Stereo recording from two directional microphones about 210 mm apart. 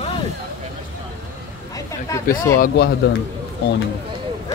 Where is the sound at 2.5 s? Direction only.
45° left (ahead or behind).